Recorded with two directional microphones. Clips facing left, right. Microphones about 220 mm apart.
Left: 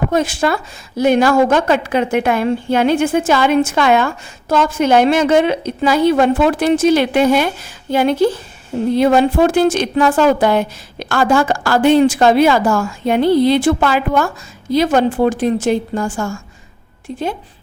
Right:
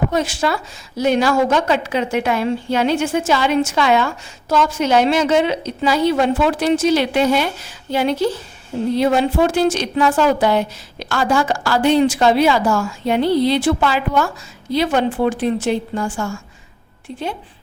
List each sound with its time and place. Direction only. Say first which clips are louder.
0.1 s a woman's voice: left 3 dB; 50° left (ahead or behind)